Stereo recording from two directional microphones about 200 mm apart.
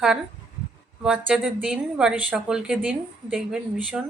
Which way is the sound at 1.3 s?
5° right (ahead or behind).